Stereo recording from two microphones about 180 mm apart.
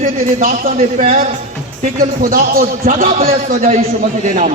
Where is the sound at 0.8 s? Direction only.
40° right (ahead or behind).